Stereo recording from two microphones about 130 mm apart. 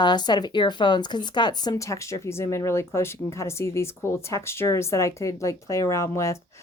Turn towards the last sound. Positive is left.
turn(degrees=20)  # may be behind; listen again after turning